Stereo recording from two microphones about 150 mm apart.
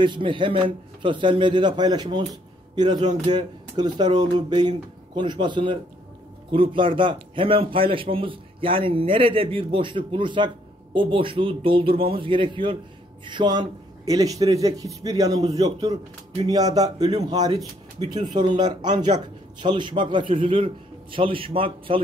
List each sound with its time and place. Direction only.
0.0 s a man's voice: 35° right (ahead or behind)